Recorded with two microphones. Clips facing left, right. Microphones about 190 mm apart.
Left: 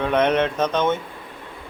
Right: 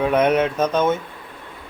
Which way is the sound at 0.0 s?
10° right (ahead or behind).